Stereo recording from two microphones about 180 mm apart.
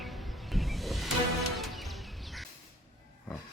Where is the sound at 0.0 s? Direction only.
Centre (ahead or behind).